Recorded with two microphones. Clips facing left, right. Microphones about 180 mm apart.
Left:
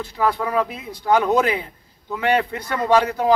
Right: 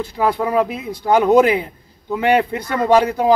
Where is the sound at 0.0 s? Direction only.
15° right (ahead or behind).